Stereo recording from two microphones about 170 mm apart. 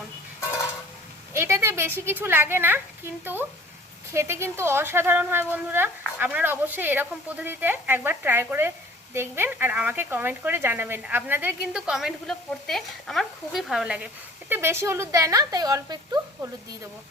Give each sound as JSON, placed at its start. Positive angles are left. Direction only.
{"t": 1.3, "sound": "a woman's voice", "side_deg": -15}